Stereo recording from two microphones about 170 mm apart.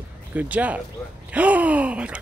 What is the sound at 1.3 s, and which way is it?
Gasp, 10° right (ahead or behind).